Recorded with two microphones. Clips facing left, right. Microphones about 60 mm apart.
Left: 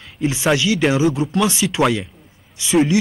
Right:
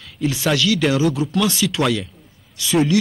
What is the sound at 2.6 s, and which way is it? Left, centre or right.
Speech, left.